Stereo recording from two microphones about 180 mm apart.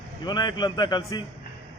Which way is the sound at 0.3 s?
25° left (ahead or behind).